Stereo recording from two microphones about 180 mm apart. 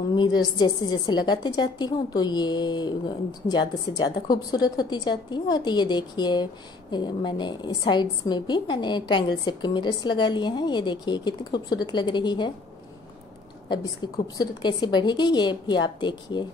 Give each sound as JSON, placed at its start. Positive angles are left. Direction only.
{"t": 0.1, "sound": "a woman's voice", "side_deg": 25}
{"t": 13.7, "sound": "a woman's voice", "side_deg": 20}